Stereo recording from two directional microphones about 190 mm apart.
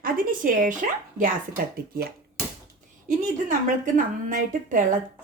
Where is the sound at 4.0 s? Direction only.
45° right (ahead or behind).